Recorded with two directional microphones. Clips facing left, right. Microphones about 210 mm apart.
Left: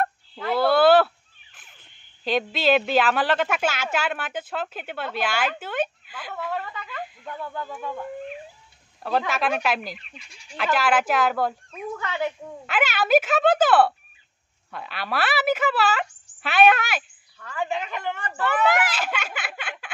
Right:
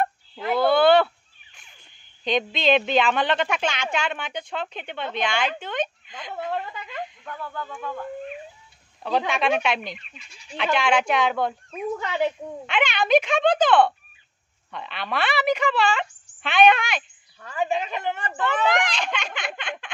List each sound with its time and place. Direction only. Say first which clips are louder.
0.6 s a sound: even; 5° left (ahead or behind)
2.2 s a woman's voice: even; 5° left (ahead or behind)
6.5 s speech: right 1 dB; 20° right (ahead or behind)
7.1 s speech: left 2 dB; 15° left (ahead or behind)
7.6 s a woman's voice: even; 5° left (ahead or behind)
12.0 s a woman's voice: right 2 dB; 20° right (ahead or behind)
12.6 s a woman's voice: even; 5° left (ahead or behind)
17.4 s a woman's voice: right 3 dB; 20° right (ahead or behind)
18.4 s speech: left 1 dB; 5° left (ahead or behind)